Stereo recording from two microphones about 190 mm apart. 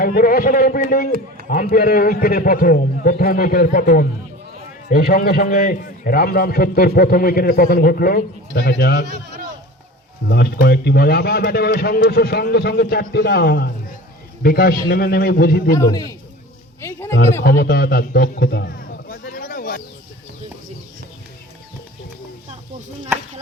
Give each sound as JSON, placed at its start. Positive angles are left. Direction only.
{"t": 0.0, "sound": "a man's voice", "side_deg": 50}
{"t": 10.2, "sound": "a man's voice", "side_deg": 60}
{"t": 15.7, "sound": "a man's voice", "side_deg": 20}
{"t": 17.4, "sound": "a man's voice", "side_deg": 55}